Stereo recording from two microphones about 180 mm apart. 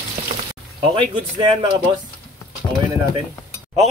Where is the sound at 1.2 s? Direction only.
25° right (ahead or behind).